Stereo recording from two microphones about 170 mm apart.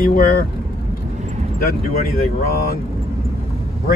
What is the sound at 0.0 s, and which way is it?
Speech, 60° left (ahead or behind).